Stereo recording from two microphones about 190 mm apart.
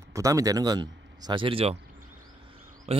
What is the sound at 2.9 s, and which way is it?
Speech, 35° right (ahead or behind).